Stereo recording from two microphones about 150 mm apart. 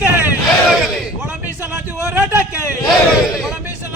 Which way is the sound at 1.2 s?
10° right (ahead or behind).